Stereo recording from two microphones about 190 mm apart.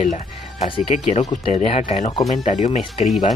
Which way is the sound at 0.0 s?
40° left (ahead or behind).